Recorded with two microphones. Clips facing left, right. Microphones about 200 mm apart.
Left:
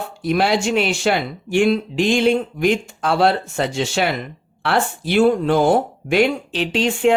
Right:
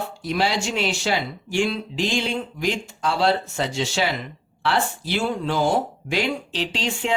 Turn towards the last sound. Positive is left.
turn(degrees=55)  # may be behind; listen again after turning